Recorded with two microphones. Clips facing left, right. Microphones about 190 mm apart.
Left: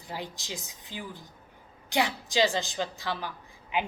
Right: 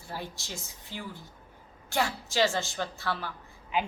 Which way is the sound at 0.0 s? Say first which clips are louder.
Left 1 dB; 15° left (ahead or behind).